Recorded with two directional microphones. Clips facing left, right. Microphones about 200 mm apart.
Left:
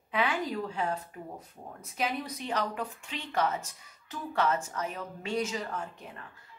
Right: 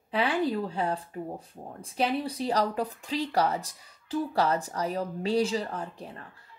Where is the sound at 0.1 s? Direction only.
35° right (ahead or behind).